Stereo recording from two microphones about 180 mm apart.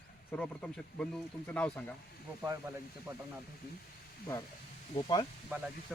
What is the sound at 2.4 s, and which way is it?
Speech, 10° right (ahead or behind).